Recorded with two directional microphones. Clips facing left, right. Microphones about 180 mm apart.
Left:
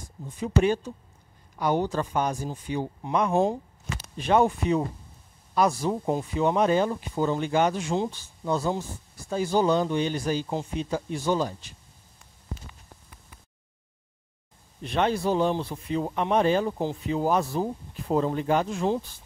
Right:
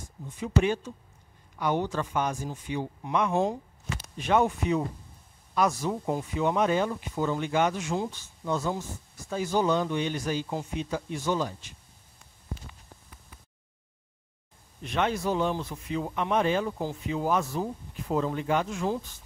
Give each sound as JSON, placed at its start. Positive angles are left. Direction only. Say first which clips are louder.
{"t": 0.4, "sound": "speech", "louder": "left 3 dB", "side_deg": 35}
{"t": 14.8, "sound": "speech", "louder": "left 3 dB", "side_deg": 35}